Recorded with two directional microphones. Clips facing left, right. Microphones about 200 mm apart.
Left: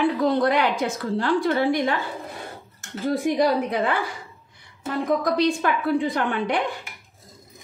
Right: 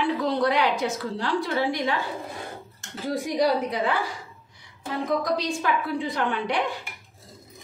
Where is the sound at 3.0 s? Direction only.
55° left (ahead or behind).